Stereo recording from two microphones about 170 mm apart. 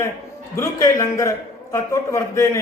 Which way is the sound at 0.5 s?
15° left (ahead or behind).